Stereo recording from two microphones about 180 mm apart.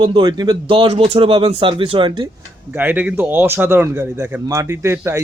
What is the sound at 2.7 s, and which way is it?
Speech, 10° right (ahead or behind).